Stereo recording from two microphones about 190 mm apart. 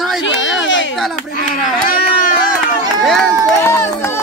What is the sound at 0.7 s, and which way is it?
Speech, 80° left.